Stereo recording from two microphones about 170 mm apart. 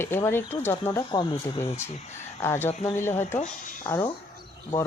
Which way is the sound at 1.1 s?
25° left (ahead or behind).